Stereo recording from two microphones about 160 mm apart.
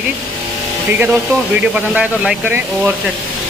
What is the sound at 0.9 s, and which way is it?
Speech, 10° right (ahead or behind).